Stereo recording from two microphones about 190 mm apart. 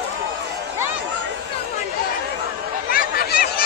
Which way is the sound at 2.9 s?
50° left (ahead or behind).